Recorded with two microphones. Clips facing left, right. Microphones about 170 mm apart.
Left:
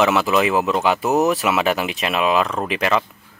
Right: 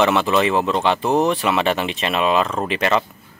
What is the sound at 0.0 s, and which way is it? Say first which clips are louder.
Speech: even; 5° left (ahead or behind).